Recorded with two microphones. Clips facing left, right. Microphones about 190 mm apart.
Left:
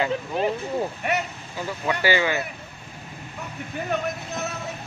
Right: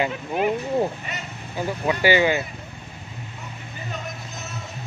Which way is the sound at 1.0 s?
65° left (ahead or behind).